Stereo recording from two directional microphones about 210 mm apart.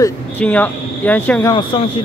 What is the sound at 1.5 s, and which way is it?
Speech, 25° left (ahead or behind).